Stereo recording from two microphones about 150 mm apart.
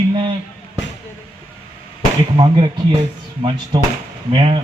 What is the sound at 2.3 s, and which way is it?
Speech, 30° right (ahead or behind).